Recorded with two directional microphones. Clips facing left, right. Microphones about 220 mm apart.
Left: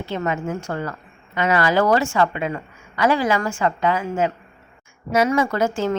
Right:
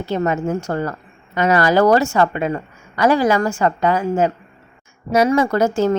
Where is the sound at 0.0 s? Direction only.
40° right (ahead or behind).